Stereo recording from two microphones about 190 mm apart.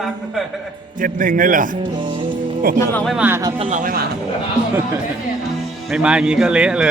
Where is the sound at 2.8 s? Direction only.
10° left (ahead or behind).